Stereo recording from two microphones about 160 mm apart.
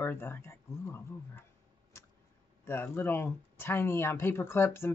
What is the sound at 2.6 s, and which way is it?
Speech, 15° left (ahead or behind).